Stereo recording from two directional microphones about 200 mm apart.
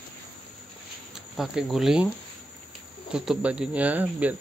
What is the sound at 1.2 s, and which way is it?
Speech, centre (ahead or behind).